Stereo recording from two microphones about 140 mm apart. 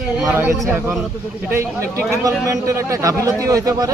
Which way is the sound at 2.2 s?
20° right (ahead or behind).